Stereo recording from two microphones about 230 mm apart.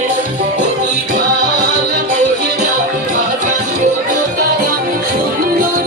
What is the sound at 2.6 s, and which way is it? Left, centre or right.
Music, right.